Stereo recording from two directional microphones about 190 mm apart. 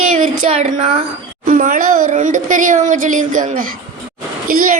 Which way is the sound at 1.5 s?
45° right (ahead or behind).